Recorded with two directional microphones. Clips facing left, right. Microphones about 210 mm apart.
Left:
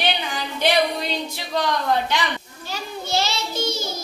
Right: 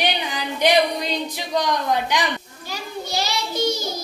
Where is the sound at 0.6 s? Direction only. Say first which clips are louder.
Right 2 dB; 15° right (ahead or behind).